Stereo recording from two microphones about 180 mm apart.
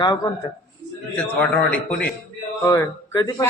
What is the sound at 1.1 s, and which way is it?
A man's voice, 5° left (ahead or behind).